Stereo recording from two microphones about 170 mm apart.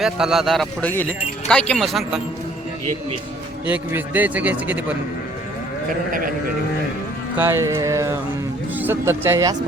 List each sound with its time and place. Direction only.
0.0 s speech: centre (ahead or behind)
3.7 s a man's voice: 10° right (ahead or behind)
6.1 s a sound: 55° right (ahead or behind)
7.3 s a man's voice: 15° right (ahead or behind)